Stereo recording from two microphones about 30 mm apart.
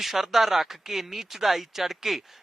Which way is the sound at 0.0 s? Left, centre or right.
Centre.